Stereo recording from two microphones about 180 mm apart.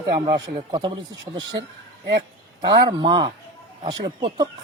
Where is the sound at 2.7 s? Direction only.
25° right (ahead or behind).